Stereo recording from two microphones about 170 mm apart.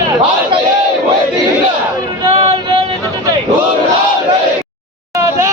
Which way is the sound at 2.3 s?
35° right (ahead or behind).